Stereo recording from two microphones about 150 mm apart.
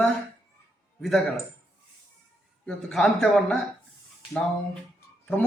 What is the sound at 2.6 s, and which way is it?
Speech, 5° left (ahead or behind).